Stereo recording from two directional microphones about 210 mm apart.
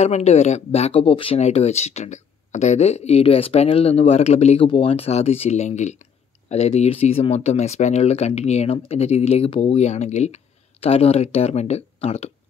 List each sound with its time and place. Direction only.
0.0 s speech: 30° left (ahead or behind)